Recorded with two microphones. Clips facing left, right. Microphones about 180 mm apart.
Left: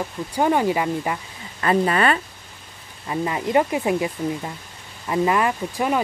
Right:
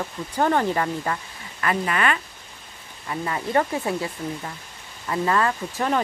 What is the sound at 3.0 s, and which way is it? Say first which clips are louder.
Speech: left 4 dB; 20° left (ahead or behind).